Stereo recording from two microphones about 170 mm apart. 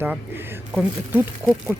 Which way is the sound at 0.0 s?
10° right (ahead or behind).